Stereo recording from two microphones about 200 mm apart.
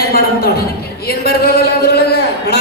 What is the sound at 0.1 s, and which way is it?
Speech, 50° left (ahead or behind).